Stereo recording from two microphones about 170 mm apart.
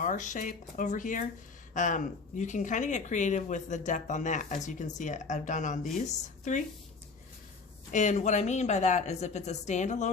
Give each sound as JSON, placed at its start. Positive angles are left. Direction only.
{"t": 0.0, "sound": "speech", "side_deg": 50}
{"t": 7.9, "sound": "speech", "side_deg": 45}